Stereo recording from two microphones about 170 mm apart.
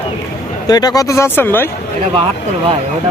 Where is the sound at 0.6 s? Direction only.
25° left (ahead or behind).